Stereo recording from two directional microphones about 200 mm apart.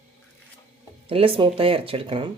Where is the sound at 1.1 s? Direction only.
30° right (ahead or behind).